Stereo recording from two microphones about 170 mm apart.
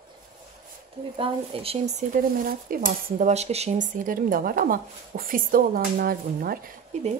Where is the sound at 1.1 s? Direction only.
35° right (ahead or behind).